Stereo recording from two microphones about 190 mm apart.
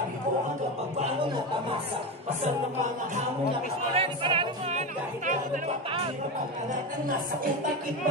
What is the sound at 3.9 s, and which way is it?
Music, 30° right (ahead or behind).